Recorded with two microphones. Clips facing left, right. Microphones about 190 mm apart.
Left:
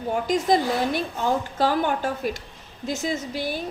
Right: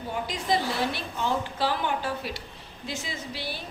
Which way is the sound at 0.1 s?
45° left (ahead or behind).